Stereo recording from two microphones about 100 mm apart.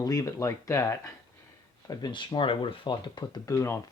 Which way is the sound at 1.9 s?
45° left (ahead or behind).